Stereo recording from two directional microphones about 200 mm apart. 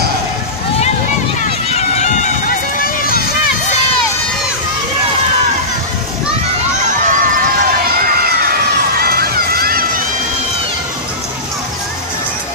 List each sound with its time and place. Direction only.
1.7 s run: 35° left (ahead or behind)
7.1 s run: 45° right (ahead or behind)
8.9 s music: 50° right (ahead or behind)